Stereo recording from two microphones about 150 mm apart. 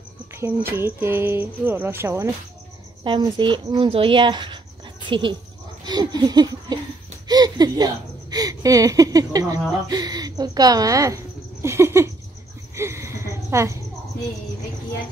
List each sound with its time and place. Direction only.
0.3 s cricket: 15° right (ahead or behind)
0.7 s speech: 15° right (ahead or behind)
3.0 s speech: 30° right (ahead or behind)
5.9 s laughter: 30° right (ahead or behind)
7.2 s speech: 25° right (ahead or behind)
12.7 s a sound: 15° right (ahead or behind)